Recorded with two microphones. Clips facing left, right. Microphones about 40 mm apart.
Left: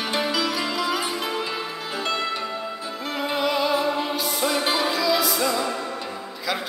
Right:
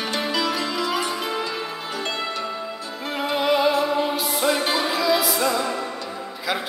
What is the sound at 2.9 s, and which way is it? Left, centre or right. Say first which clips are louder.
Music: right 2 dB; centre.